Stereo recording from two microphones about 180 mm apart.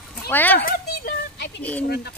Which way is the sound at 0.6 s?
60° left (ahead or behind).